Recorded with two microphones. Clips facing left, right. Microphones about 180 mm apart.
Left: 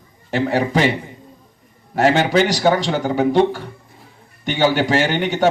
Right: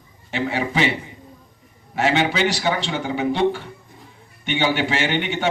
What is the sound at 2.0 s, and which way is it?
A man's voice, 45° left (ahead or behind).